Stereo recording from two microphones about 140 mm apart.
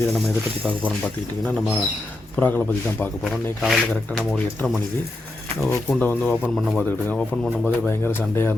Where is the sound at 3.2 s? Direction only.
Centre (ahead or behind).